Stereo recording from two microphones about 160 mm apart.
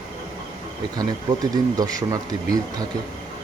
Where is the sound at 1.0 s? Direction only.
25° right (ahead or behind).